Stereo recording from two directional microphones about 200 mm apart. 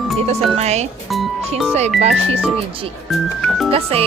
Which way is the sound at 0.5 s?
35° right (ahead or behind).